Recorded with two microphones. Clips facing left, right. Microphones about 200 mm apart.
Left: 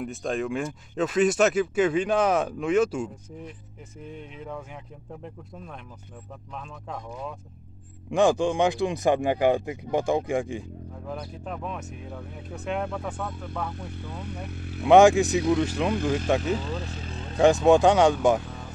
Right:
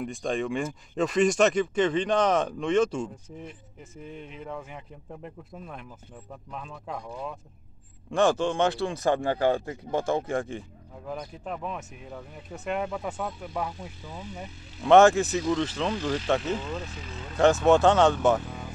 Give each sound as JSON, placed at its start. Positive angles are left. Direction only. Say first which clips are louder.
{"t": 0.0, "sound": "speech", "louder": "even", "side_deg": 0}
{"t": 8.1, "sound": "speech", "louder": "left 2 dB", "side_deg": 15}
{"t": 11.1, "sound": "speech", "louder": "right 1 dB", "side_deg": 0}
{"t": 14.2, "sound": "speech", "louder": "left 4 dB", "side_deg": 65}
{"t": 14.8, "sound": "speech", "louder": "left 2 dB", "side_deg": 10}
{"t": 16.5, "sound": "speech", "louder": "left 2 dB", "side_deg": 35}
{"t": 17.4, "sound": "speech", "louder": "left 2 dB", "side_deg": 15}
{"t": 18.4, "sound": "music", "louder": "right 1 dB", "side_deg": -10}